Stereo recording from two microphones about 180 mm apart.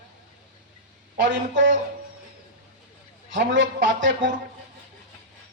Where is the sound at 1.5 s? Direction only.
90° right.